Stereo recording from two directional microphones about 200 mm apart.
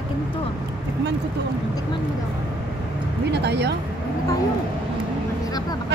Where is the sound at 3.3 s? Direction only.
55° right (ahead or behind).